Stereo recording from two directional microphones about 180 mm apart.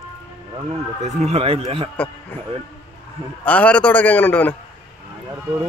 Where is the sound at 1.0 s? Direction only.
40° right (ahead or behind).